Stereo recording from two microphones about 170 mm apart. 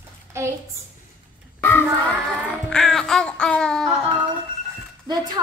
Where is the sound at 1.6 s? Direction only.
15° left (ahead or behind).